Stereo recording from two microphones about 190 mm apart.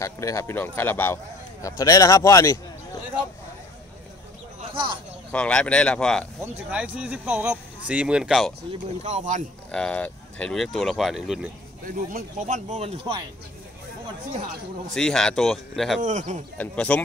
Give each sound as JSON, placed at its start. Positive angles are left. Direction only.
{"t": 0.0, "sound": "speech", "side_deg": 15}
{"t": 5.3, "sound": "speech", "side_deg": 5}
{"t": 6.4, "sound": "speech", "side_deg": -5}
{"t": 9.0, "sound": "speech", "side_deg": -40}
{"t": 9.7, "sound": "speech", "side_deg": 5}
{"t": 11.8, "sound": "speech", "side_deg": -45}
{"t": 15.0, "sound": "speech", "side_deg": 5}
{"t": 16.0, "sound": "speech", "side_deg": -40}
{"t": 16.5, "sound": "speech", "side_deg": 5}